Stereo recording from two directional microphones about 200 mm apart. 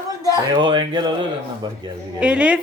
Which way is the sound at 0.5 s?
20° right (ahead or behind).